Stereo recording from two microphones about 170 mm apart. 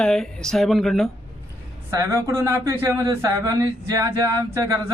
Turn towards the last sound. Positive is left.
turn(degrees=-20)  # may be behind; listen again after turning